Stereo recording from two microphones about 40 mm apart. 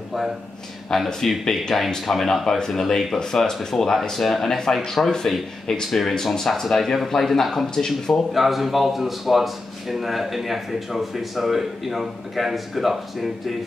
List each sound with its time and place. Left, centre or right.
0.9 s speech: centre
1.4 s speech: centre
8.3 s speech: centre